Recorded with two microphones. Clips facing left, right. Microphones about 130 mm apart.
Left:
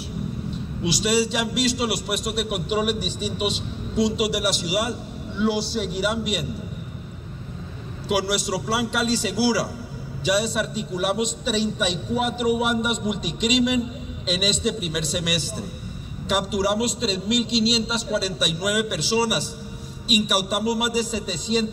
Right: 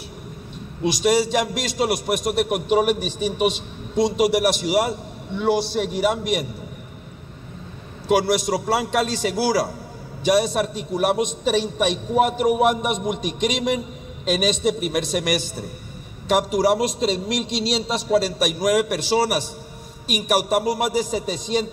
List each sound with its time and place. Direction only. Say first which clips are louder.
0.8 s a man's voice: right 3 dB; 50° right (ahead or behind)
8.1 s a man's voice: right 5 dB; 50° right (ahead or behind)